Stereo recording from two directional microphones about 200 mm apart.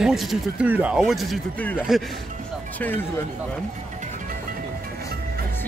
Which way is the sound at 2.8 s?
10° left (ahead or behind).